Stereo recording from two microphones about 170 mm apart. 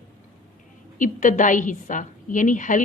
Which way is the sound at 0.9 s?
50° left (ahead or behind).